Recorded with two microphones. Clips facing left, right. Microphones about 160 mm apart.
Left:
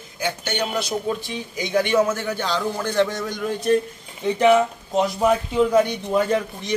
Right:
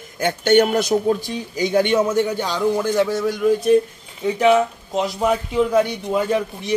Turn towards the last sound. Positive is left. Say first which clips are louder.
# right 1 dB
turn(degrees=-10)  # may be behind; listen again after turning